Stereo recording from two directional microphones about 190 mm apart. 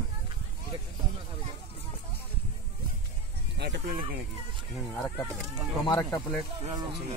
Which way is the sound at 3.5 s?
65° right (ahead or behind).